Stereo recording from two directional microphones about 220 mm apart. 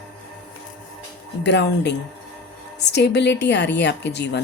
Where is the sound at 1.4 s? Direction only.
50° left (ahead or behind).